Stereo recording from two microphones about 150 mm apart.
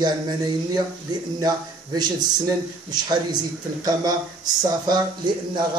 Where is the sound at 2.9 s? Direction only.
25° right (ahead or behind).